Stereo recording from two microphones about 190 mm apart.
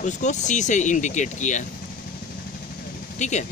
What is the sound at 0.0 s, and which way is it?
Speech, 40° left (ahead or behind).